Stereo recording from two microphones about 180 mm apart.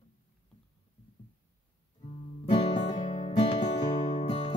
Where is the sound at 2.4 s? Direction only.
30° left (ahead or behind).